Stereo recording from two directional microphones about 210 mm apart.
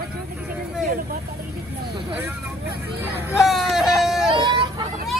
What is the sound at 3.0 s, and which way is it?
Hubbub, 10° right (ahead or behind).